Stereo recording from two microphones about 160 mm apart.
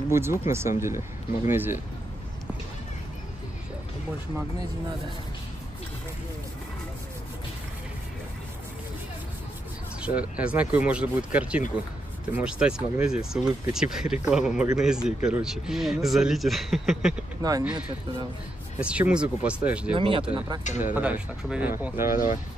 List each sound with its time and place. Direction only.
0.1 s speech: 15° right (ahead or behind)
10.0 s speech: 10° right (ahead or behind)
17.4 s speech: 20° right (ahead or behind)
18.8 s speech: 5° right (ahead or behind)
19.9 s speech: 35° right (ahead or behind)
20.6 s speech: 50° left (ahead or behind)
20.9 s speech: 10° right (ahead or behind)
22.1 s speech: 60° left (ahead or behind)